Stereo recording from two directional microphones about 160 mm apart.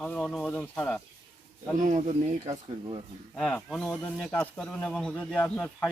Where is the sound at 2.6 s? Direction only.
30° right (ahead or behind).